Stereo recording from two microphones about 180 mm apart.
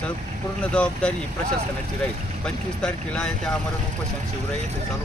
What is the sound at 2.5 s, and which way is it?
Speech, 5° left (ahead or behind).